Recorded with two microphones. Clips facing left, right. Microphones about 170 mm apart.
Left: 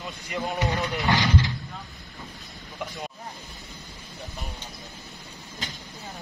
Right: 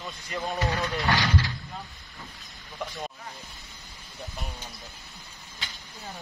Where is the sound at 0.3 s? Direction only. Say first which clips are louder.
Left 2 dB; 15° left (ahead or behind).